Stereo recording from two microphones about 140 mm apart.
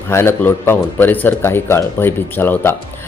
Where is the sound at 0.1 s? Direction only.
15° left (ahead or behind).